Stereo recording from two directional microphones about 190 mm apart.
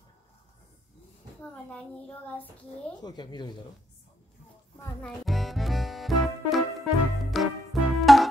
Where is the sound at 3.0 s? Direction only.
25° left (ahead or behind).